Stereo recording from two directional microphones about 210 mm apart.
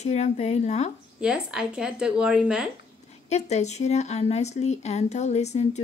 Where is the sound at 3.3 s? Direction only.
30° left (ahead or behind).